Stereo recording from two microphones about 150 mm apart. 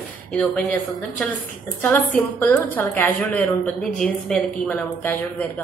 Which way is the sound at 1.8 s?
10° left (ahead or behind).